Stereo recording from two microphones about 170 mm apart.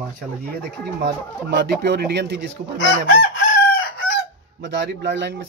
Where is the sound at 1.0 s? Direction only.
75° right (ahead or behind).